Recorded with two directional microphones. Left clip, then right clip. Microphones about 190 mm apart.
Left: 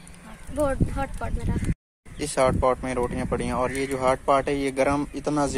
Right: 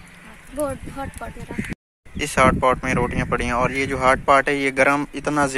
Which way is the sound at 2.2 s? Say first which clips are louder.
Right 5 dB; centre (ahead or behind).